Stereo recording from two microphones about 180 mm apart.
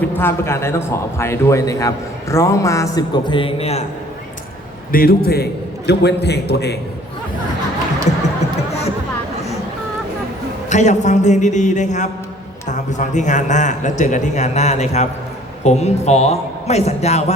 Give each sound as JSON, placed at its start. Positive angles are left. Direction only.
{"t": 0.1, "sound": "a man's voice", "side_deg": 10}
{"t": 4.9, "sound": "a man's voice", "side_deg": 55}
{"t": 10.7, "sound": "a man's voice", "side_deg": 40}